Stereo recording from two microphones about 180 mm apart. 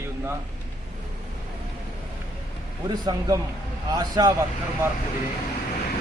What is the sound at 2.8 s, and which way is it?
A man's voice, 20° right (ahead or behind).